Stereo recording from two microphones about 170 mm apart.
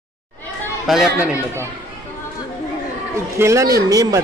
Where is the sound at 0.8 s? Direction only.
Centre (ahead or behind).